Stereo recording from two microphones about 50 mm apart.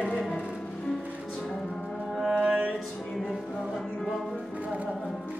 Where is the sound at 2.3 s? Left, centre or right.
Right.